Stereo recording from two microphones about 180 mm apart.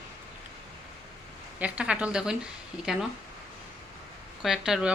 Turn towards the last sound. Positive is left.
turn(degrees=-5)  # may be behind; listen again after turning